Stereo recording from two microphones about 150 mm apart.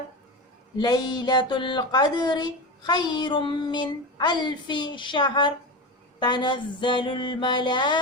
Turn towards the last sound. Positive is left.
turn(degrees=30)  # may be behind; listen again after turning